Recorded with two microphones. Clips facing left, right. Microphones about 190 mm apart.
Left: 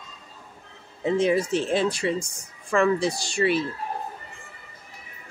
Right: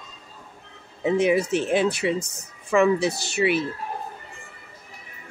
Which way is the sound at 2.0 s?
15° right (ahead or behind).